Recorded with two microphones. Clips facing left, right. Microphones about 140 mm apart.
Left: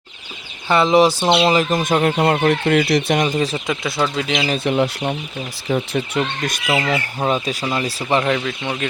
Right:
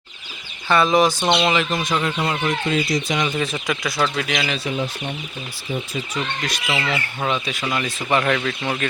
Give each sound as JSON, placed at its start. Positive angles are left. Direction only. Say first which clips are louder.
{"t": 0.7, "sound": "speech", "louder": "left 3 dB", "side_deg": 25}
{"t": 1.2, "sound": "speech", "louder": "left 3 dB", "side_deg": 5}
{"t": 1.5, "sound": "speech", "louder": "left 4 dB", "side_deg": 40}
{"t": 3.3, "sound": "speech", "louder": "left 3 dB", "side_deg": 25}
{"t": 4.5, "sound": "speech", "louder": "left 7 dB", "side_deg": 60}
{"t": 7.2, "sound": "speech", "louder": "left 3 dB", "side_deg": 30}
{"t": 8.2, "sound": "speech", "louder": "left 1 dB", "side_deg": 15}